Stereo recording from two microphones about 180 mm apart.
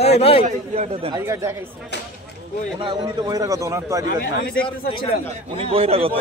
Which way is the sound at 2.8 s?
25° right (ahead or behind).